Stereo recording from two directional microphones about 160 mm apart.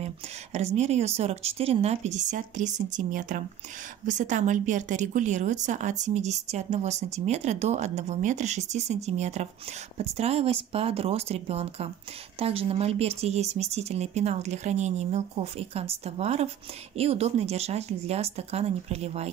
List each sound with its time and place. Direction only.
0.0 s a woman's voice: 45° right (ahead or behind)